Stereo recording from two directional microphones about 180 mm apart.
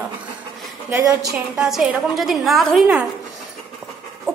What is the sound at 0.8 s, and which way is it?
Speech, 15° right (ahead or behind).